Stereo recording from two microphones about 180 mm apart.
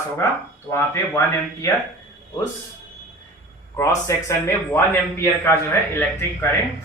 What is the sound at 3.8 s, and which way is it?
A man's voice, 15° left (ahead or behind).